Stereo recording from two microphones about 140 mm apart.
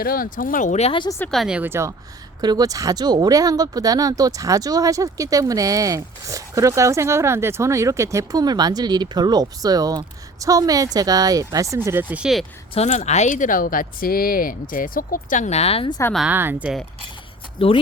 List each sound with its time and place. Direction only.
0.0 s speech: 90° left; by 0.9 s 55° left (ahead or behind)
1.3 s speech: centre (ahead or behind)
2.4 s speech: 30° right (ahead or behind); by 12.5 s 5° right (ahead or behind)
12.7 s speech: 50° left (ahead or behind)
15.9 s speech: 20° left (ahead or behind)
16.1 s speech: 10° right (ahead or behind)
17.6 s speech: 40° left (ahead or behind)